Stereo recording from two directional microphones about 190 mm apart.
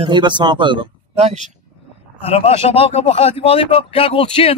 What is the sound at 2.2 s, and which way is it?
Speech, 30° left (ahead or behind).